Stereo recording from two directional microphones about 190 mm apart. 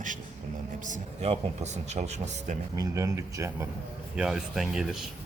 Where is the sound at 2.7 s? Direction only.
15° right (ahead or behind).